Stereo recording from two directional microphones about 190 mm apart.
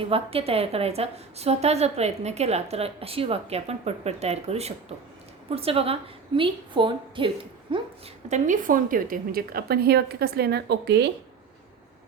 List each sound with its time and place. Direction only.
0.0 s a woman's voice: 30° right (ahead or behind)
8.3 s a woman's voice: 40° right (ahead or behind); by 11.1 s 65° right (ahead or behind)